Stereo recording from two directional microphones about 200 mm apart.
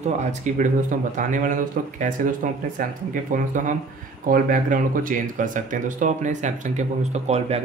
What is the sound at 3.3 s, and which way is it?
Speech, 40° right (ahead or behind).